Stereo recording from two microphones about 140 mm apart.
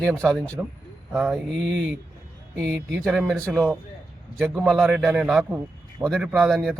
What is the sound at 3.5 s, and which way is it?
Speech, 10° right (ahead or behind).